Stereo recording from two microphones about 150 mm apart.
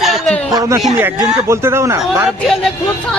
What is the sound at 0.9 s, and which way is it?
Speech, 15° right (ahead or behind).